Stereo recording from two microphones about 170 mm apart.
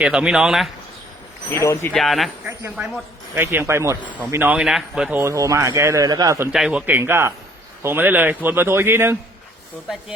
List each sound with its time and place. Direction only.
0.0 s speech: 5° right (ahead or behind)
1.5 s speech: 15° left (ahead or behind)
1.9 s a man's voice: centre (ahead or behind)
5.2 s a man's voice: 20° right (ahead or behind)
6.5 s a man's voice: 5° right (ahead or behind)